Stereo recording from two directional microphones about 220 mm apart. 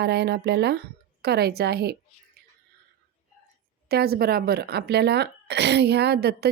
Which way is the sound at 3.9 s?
45° right (ahead or behind).